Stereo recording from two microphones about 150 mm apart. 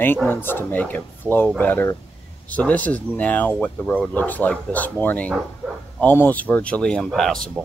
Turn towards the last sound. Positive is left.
turn(degrees=0)  # may be behind; listen again after turning